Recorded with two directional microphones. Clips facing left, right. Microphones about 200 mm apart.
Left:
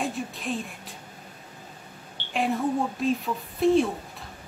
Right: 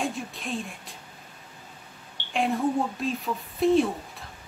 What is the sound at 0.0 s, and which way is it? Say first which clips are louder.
Speech: left 1 dB; centre (ahead or behind).